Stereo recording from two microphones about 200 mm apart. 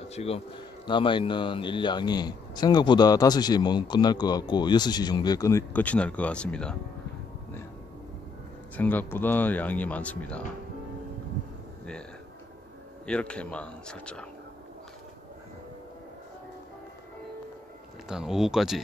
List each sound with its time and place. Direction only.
0.1 s speech: 30° left (ahead or behind); by 6.8 s 5° left (ahead or behind)
8.7 s speech: 10° left (ahead or behind)
13.0 s speech: 5° left (ahead or behind)
18.0 s speech: 5° right (ahead or behind)